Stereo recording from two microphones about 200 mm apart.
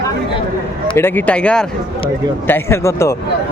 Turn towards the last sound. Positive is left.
turn(degrees=15)  # may be behind; listen again after turning